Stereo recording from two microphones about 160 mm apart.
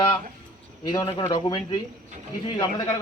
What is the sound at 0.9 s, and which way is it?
A man's voice, 25° left (ahead or behind).